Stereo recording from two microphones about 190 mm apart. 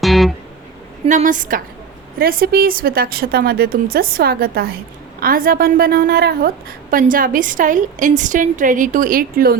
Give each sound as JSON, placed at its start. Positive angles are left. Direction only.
{"t": 0.0, "sound": "music", "side_deg": 0}
{"t": 1.0, "sound": "a woman's voice", "side_deg": -40}